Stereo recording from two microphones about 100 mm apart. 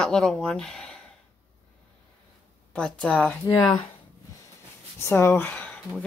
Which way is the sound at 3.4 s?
35° left (ahead or behind).